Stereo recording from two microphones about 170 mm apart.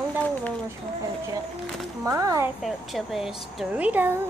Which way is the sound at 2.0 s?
20° right (ahead or behind).